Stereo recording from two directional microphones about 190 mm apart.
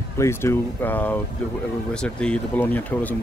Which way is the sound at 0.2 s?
15° left (ahead or behind).